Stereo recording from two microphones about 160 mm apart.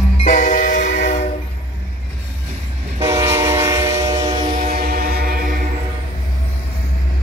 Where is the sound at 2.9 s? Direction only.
20° right (ahead or behind).